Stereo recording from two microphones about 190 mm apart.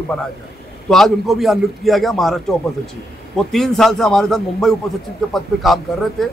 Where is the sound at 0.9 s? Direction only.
Centre (ahead or behind).